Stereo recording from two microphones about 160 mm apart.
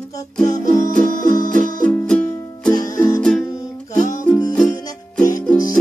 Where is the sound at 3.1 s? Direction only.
5° left (ahead or behind).